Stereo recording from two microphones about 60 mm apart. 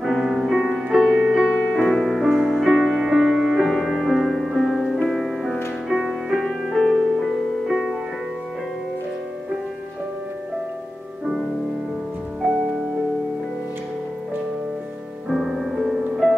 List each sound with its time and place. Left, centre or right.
0.0 s music: centre
1.9 s music: centre
12.4 s music: centre
15.2 s music: centre